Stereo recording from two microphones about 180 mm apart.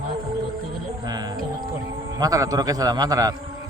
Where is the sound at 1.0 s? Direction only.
20° right (ahead or behind).